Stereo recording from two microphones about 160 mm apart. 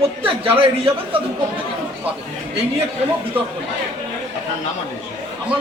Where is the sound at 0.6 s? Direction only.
35° right (ahead or behind).